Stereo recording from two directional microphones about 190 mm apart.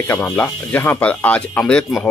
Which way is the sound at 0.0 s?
10° left (ahead or behind).